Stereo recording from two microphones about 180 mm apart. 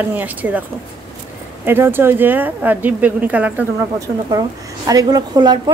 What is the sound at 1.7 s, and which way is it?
A woman's voice, 10° right (ahead or behind).